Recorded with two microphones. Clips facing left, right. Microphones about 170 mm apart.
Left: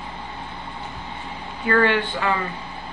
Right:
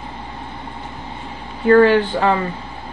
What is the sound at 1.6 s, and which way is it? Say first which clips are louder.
Speech: right 8 dB; 35° right (ahead or behind).